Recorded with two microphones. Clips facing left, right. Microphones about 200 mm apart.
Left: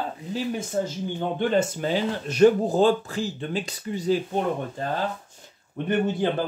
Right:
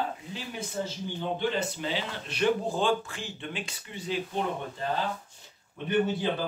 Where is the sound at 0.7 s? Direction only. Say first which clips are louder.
Left 5 dB; 50° left (ahead or behind).